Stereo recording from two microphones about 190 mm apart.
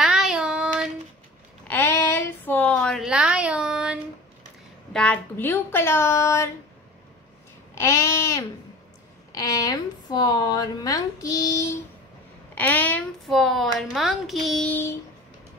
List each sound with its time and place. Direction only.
0.0 s child singing: 5° right (ahead or behind)
1.7 s a sound: 15° left (ahead or behind); by 4.0 s 5° right (ahead or behind)
4.9 s a woman's voice: 5° left (ahead or behind)
7.7 s a sound: 15° left (ahead or behind)
9.3 s speech: 20° left (ahead or behind)
12.5 s a woman's voice: 10° left (ahead or behind)